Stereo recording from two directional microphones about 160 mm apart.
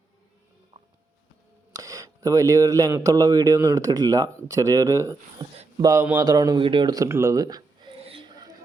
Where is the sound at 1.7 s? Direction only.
20° right (ahead or behind).